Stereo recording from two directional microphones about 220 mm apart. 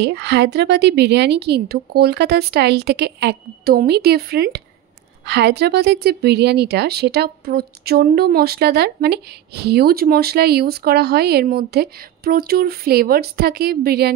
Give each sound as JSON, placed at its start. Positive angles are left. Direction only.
{"t": 0.0, "sound": "a woman's voice", "side_deg": -50}